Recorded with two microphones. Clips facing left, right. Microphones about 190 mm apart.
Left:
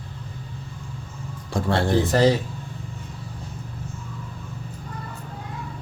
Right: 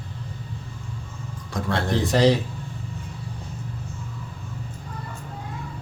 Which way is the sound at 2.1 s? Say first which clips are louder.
Right 1 dB; centre (ahead or behind).